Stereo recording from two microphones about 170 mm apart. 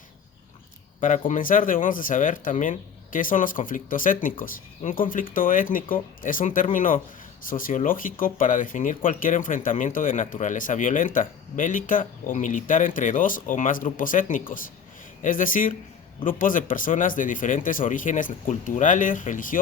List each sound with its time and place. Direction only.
1.3 s speech: 50° left (ahead or behind)